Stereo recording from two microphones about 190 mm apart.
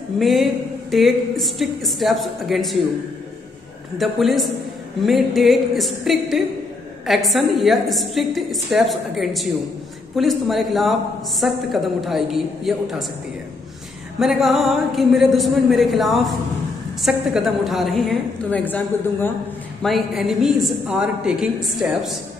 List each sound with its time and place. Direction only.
0.2 s a man's voice: centre (ahead or behind)
4.0 s a man's voice: centre (ahead or behind)
14.2 s a man's voice: centre (ahead or behind)